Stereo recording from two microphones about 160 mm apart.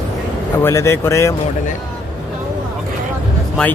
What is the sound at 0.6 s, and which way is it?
Speech, 15° left (ahead or behind).